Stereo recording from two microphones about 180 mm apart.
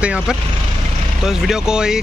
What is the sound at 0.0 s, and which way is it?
Speech, 5° right (ahead or behind).